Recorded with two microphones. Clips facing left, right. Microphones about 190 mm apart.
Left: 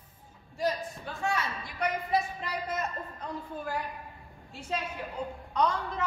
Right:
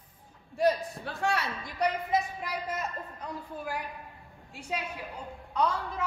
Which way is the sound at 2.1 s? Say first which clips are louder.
Even; 10° right (ahead or behind).